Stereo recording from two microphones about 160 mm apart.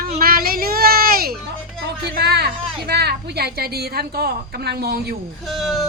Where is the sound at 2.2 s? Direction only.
90° right.